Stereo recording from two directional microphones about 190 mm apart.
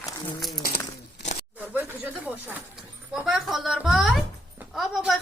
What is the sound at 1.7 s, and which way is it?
Speech, 10° right (ahead or behind).